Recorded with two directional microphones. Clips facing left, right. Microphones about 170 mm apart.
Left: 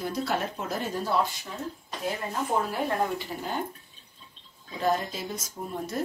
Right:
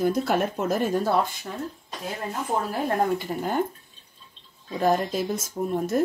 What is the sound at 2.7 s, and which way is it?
Speech, 50° right (ahead or behind).